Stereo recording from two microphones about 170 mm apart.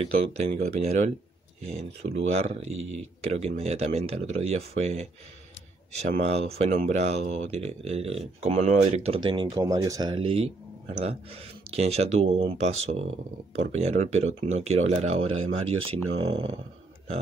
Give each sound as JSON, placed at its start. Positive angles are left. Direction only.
{"t": 0.0, "sound": "speech", "side_deg": -35}
{"t": 2.1, "sound": "speech", "side_deg": -35}
{"t": 6.1, "sound": "speech", "side_deg": -35}
{"t": 10.1, "sound": "speech", "side_deg": -35}